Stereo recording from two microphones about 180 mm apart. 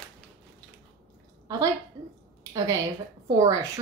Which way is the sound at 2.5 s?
15° right (ahead or behind).